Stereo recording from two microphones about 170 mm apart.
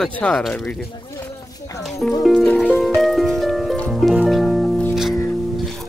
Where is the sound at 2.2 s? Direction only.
5° left (ahead or behind).